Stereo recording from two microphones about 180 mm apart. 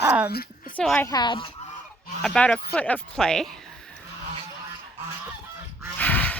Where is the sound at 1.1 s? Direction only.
25° left (ahead or behind).